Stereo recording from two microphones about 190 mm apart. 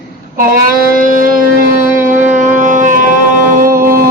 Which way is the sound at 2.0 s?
40° right (ahead or behind).